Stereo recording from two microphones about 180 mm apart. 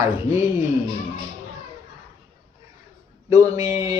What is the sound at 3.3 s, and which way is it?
Speech, 20° right (ahead or behind).